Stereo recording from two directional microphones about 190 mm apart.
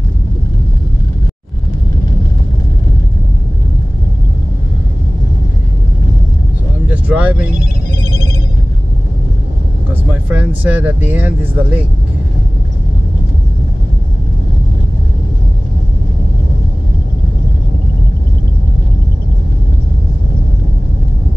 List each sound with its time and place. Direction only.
6.9 s speech: 10° right (ahead or behind)
8.0 s telephone bell ringing: 40° right (ahead or behind)
10.6 s speech: 10° right (ahead or behind)